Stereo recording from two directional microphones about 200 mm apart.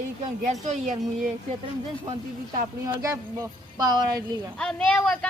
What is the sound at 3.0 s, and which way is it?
Speech, 15° right (ahead or behind).